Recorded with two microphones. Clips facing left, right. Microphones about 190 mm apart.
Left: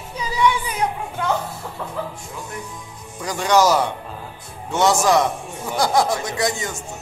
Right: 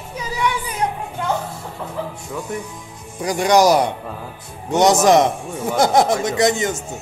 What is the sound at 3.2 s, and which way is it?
Speech, 15° right (ahead or behind).